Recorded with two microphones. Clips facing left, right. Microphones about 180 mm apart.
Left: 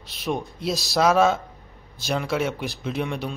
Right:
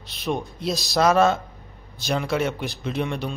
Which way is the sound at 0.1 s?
5° left (ahead or behind).